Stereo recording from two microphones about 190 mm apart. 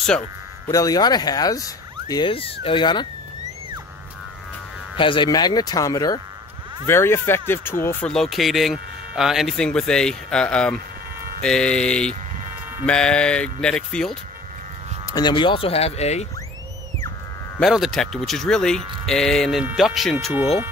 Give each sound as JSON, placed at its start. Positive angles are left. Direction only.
{"t": 0.7, "sound": "speech", "side_deg": 20}
{"t": 4.9, "sound": "speech", "side_deg": 25}
{"t": 15.1, "sound": "speech", "side_deg": 25}
{"t": 17.6, "sound": "speech", "side_deg": 0}